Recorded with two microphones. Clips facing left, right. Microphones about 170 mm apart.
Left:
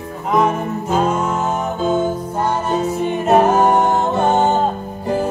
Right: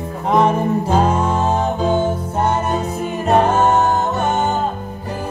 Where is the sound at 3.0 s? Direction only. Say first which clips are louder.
Left 1 dB; 5° left (ahead or behind).